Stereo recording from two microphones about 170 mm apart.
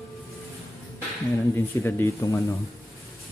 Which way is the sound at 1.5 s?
15° left (ahead or behind).